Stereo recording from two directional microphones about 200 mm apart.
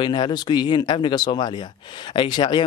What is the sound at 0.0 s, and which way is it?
Speech, 20° left (ahead or behind).